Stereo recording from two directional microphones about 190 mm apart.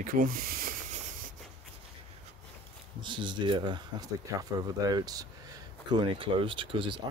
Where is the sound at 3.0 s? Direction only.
25° right (ahead or behind).